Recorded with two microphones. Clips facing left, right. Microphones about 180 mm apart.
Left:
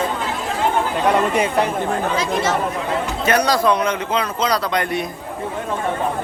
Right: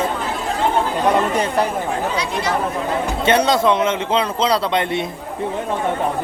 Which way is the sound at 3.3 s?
25° right (ahead or behind).